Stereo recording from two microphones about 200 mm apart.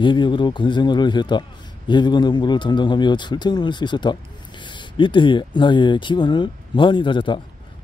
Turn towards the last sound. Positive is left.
turn(degrees=25)  # may be behind; listen again after turning